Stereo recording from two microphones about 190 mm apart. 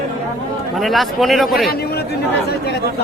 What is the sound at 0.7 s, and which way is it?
Speech, centre (ahead or behind).